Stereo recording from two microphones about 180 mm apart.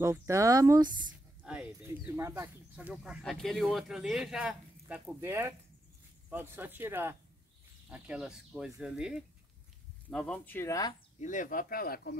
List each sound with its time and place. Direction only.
0.0 s speech: 15° right (ahead or behind)
1.4 s speech: 5° right (ahead or behind); by 11.0 s 20° left (ahead or behind)
11.1 s speech: 45° left (ahead or behind)